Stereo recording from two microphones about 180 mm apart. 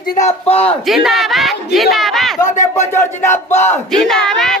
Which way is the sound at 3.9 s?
Centre (ahead or behind).